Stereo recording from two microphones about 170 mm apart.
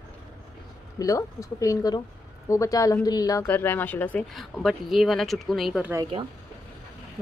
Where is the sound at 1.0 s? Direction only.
20° left (ahead or behind); by 5.9 s 5° right (ahead or behind).